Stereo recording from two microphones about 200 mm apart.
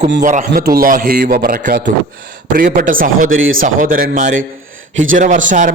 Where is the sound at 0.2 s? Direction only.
40° right (ahead or behind).